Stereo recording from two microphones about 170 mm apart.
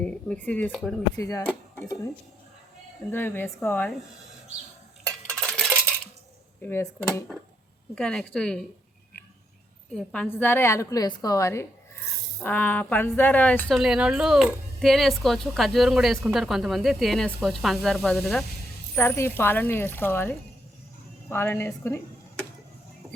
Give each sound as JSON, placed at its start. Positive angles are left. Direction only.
{"t": 0.0, "sound": "speech", "side_deg": 5}
{"t": 1.1, "sound": "speech", "side_deg": 20}
{"t": 3.1, "sound": "a woman's voice", "side_deg": 10}
{"t": 5.3, "sound": "a sound", "side_deg": 5}
{"t": 6.6, "sound": "a woman's voice", "side_deg": 15}
{"t": 9.9, "sound": "a woman's voice", "side_deg": 5}